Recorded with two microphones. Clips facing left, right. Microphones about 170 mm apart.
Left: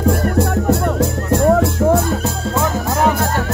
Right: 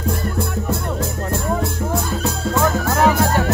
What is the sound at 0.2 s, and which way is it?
Music, 70° left (ahead or behind).